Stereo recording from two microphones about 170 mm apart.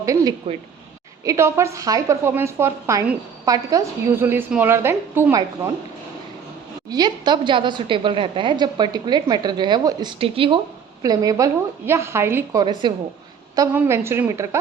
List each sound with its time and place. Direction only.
0.0 s a sound: 20° right (ahead or behind)
1.2 s a woman's voice: 20° right (ahead or behind)
6.9 s a woman's voice: 25° right (ahead or behind)
11.0 s a woman's voice: 20° right (ahead or behind)
12.8 s a woman's voice: 25° right (ahead or behind)
13.7 s a woman's voice: 15° right (ahead or behind)